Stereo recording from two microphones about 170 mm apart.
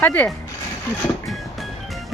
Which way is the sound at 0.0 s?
10° left (ahead or behind).